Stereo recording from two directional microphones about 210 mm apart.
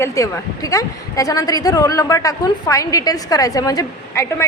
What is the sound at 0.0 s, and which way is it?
A woman's voice, 15° left (ahead or behind).